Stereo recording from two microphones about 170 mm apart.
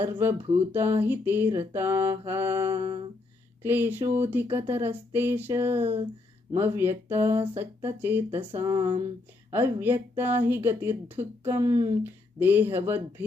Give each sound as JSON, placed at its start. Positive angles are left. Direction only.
{"t": 0.0, "sound": "speech", "side_deg": -15}
{"t": 5.8, "sound": "a sound", "side_deg": -35}
{"t": 6.5, "sound": "speech", "side_deg": -15}
{"t": 8.6, "sound": "speech", "side_deg": -25}
{"t": 9.5, "sound": "speech", "side_deg": -10}